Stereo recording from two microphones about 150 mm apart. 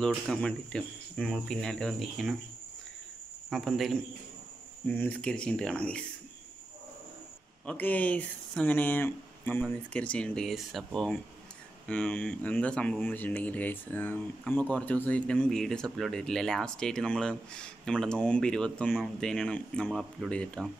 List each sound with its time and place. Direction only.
0.3 s speech: 5° left (ahead or behind)
3.4 s speech: centre (ahead or behind)
4.8 s speech: 10° left (ahead or behind)
7.6 s speech: 10° left (ahead or behind)